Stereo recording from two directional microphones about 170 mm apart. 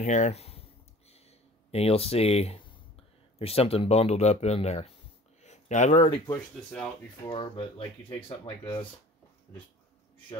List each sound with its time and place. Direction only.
0.0 s speech: 45° left (ahead or behind)
1.1 s a sound: 35° left (ahead or behind)
3.3 s speech: 35° left (ahead or behind)
5.4 s a sound: 45° left (ahead or behind)
6.0 s speech: 20° left (ahead or behind)
7.2 s speech: 30° left (ahead or behind)